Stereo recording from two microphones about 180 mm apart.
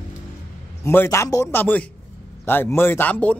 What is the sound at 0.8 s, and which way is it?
A man's voice, 15° left (ahead or behind).